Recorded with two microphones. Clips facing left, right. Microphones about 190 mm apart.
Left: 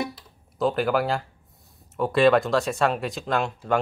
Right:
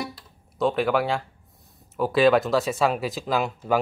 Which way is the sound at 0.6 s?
Centre (ahead or behind).